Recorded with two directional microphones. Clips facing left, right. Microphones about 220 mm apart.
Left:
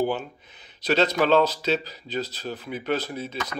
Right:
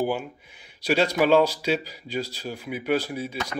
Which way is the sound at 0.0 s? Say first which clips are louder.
Left 1 dB; 10° right (ahead or behind).